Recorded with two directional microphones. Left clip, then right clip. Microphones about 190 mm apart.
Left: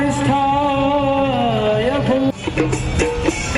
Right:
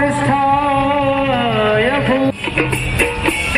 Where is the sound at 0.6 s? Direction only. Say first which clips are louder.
Right 2 dB; 15° right (ahead or behind).